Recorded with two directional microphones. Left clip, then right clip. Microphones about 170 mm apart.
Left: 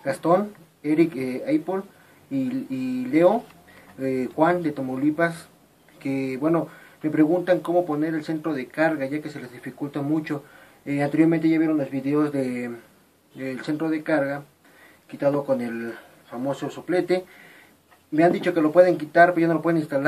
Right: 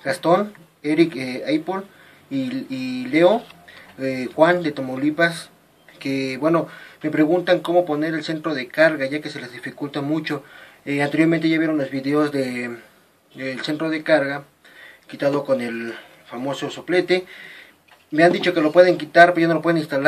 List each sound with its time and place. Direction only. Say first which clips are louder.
0.0 s speech: right 3 dB; 5° right (ahead or behind)